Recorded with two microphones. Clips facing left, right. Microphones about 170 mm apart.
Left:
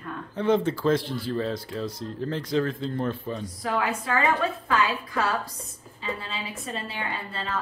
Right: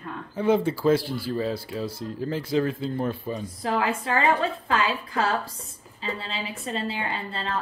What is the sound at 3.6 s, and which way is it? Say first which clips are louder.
A woman's voice: right 2 dB; 30° right (ahead or behind).